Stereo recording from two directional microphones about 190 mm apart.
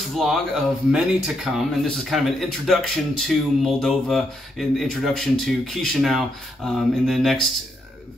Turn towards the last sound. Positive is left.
turn(degrees=0)  # may be behind; listen again after turning